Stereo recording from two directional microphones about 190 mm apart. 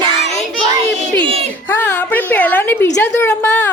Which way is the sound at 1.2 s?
30° right (ahead or behind).